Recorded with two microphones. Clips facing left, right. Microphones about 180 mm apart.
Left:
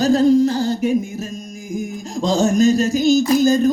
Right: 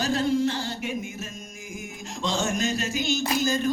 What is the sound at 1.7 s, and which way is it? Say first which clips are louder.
Music: left 13 dB; 35° left (ahead or behind).